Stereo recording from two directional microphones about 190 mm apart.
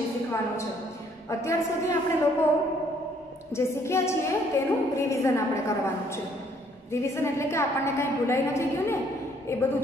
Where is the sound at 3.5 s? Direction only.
15° left (ahead or behind).